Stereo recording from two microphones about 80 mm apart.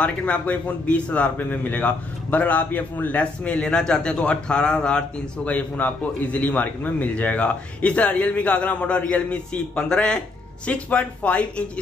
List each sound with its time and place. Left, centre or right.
0.0 s a man's voice: centre